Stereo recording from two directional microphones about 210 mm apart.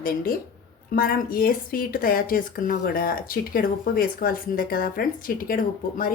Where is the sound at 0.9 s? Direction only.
45° left (ahead or behind).